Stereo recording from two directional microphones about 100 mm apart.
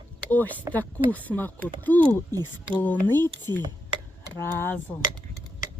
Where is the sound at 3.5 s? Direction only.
35° left (ahead or behind).